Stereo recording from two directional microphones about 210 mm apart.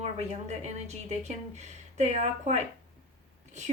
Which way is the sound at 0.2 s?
30° right (ahead or behind).